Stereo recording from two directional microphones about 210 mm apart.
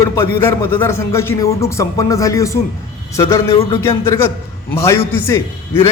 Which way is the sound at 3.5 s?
25° left (ahead or behind).